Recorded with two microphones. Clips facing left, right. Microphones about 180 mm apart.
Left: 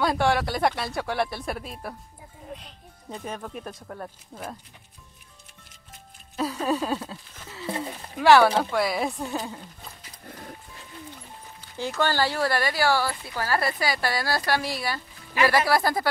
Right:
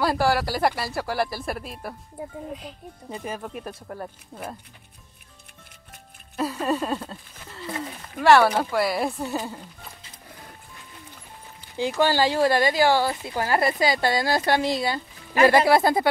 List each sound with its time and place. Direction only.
0.0 s speech: 5° right (ahead or behind)
3.1 s speech: 5° right (ahead or behind)
6.3 s speech: centre (ahead or behind)
11.7 s speech: 15° right (ahead or behind)